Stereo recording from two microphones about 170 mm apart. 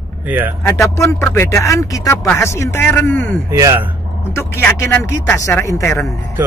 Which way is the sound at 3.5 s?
15° right (ahead or behind).